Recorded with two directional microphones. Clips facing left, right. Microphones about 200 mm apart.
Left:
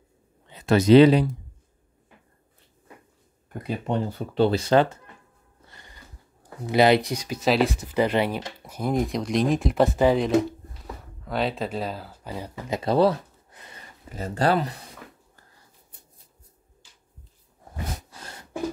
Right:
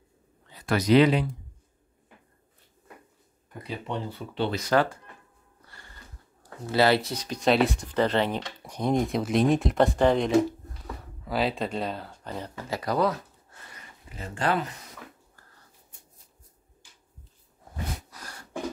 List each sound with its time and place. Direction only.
0.5 s speech: 25° left (ahead or behind)
3.6 s speech: 50° left (ahead or behind); by 4.9 s 25° left (ahead or behind)
5.7 s sniff: 20° left (ahead or behind)
6.6 s speech: 15° left (ahead or behind)
13.5 s a sound: 20° left (ahead or behind)
13.7 s speech: 40° left (ahead or behind)
18.1 s a sound: 25° left (ahead or behind)